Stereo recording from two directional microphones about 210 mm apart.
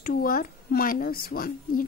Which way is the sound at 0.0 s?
45° left (ahead or behind).